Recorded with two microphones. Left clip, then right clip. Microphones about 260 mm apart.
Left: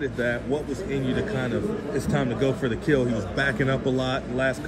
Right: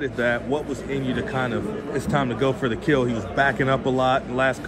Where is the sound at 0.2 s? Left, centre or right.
Right.